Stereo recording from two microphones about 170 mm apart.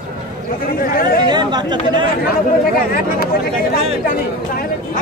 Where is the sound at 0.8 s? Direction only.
55° left (ahead or behind).